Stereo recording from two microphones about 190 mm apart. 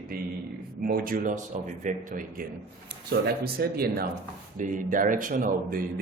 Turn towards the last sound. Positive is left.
turn(degrees=-45)  # may be behind; listen again after turning